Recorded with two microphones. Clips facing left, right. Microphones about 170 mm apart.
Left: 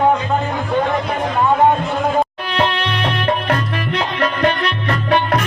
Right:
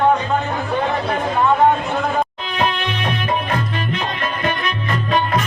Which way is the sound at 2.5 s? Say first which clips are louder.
Left 2 dB; 70° left (ahead or behind).